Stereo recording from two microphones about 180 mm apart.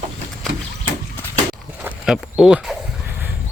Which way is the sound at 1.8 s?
Centre (ahead or behind).